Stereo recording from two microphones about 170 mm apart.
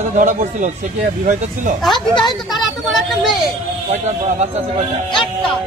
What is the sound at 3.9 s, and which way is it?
Speech, 40° right (ahead or behind).